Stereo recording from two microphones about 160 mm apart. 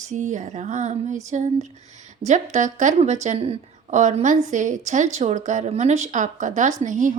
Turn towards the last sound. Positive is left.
turn(degrees=-55)  # may be behind; listen again after turning